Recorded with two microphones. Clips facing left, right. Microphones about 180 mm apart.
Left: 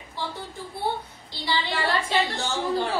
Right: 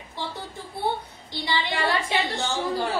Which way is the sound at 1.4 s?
20° right (ahead or behind).